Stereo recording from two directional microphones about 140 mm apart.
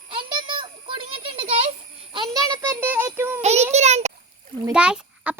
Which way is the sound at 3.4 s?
50° right (ahead or behind).